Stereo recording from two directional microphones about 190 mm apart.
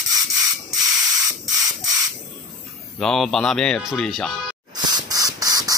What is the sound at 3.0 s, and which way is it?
Rub, centre (ahead or behind).